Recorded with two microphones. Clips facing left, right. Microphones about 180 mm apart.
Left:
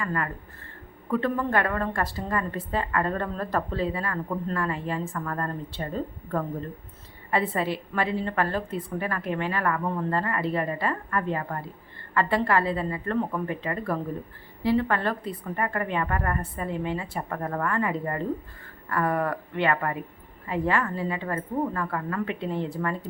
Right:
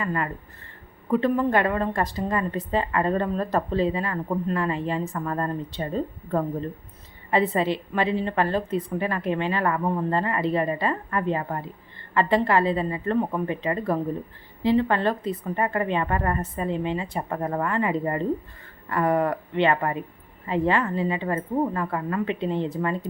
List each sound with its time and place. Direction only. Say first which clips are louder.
0.0 s a woman's voice: right 2 dB; 20° right (ahead or behind)